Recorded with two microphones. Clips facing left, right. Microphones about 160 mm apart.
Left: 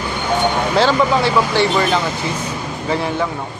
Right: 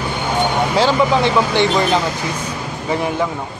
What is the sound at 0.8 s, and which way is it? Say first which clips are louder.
Speech: even; 15° right (ahead or behind).